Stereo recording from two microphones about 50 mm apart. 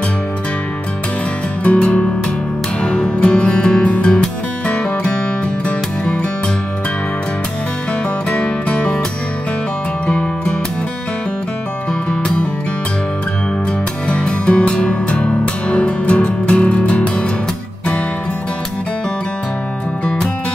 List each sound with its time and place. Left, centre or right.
1.6 s music: left
8.3 s music: left
10.0 s music: centre
12.1 s music: centre
14.0 s music: left